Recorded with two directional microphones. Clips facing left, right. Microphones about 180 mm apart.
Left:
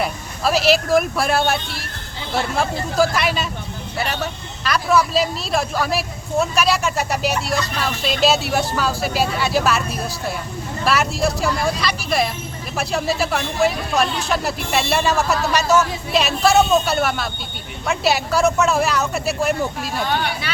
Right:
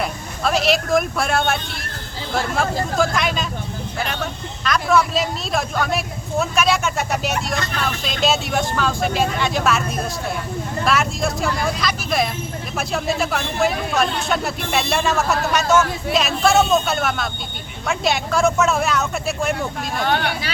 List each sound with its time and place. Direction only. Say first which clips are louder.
0.0 s speech: left 1 dB; 5° left (ahead or behind)
20.1 s speech: right 3 dB; 60° right (ahead or behind)